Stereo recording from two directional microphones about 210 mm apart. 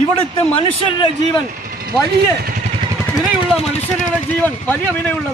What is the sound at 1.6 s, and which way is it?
Vehicle, 45° right (ahead or behind).